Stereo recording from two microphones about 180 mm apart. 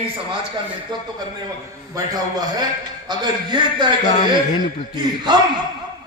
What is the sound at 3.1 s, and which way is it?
Speech, 25° right (ahead or behind).